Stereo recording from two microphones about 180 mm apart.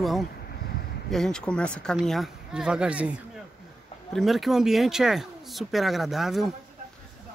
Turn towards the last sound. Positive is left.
turn(degrees=0)  # may be behind; listen again after turning